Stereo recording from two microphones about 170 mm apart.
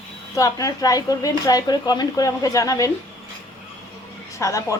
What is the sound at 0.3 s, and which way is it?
Speech, 20° left (ahead or behind).